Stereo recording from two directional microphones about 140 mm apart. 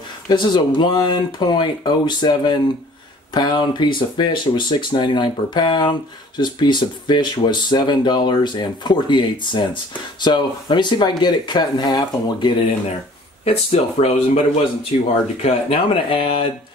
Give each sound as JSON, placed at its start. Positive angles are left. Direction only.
{"t": 0.3, "sound": "speech", "side_deg": 30}
{"t": 13.5, "sound": "speech", "side_deg": 45}
{"t": 15.4, "sound": "speech", "side_deg": 40}